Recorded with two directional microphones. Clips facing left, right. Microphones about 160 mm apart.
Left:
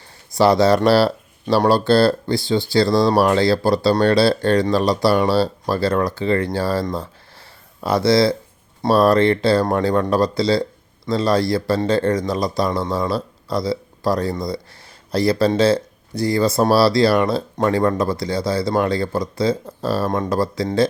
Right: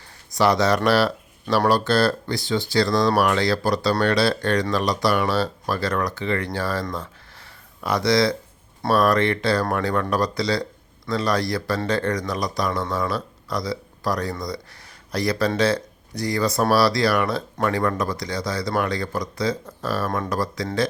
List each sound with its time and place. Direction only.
0.3 s speech: 30° left (ahead or behind)